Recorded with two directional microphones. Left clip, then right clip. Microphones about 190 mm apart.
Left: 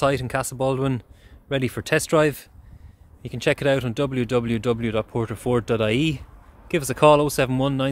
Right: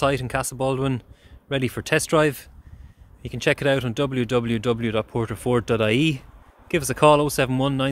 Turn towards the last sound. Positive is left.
turn(degrees=0)  # may be behind; listen again after turning